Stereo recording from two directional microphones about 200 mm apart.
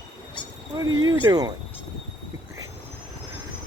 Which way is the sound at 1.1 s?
20° right (ahead or behind).